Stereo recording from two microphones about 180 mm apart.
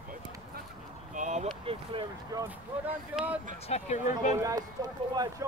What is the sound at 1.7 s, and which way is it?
Speech, 30° right (ahead or behind).